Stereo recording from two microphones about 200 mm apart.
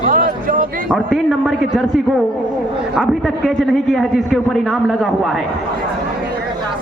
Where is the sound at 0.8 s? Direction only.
5° left (ahead or behind).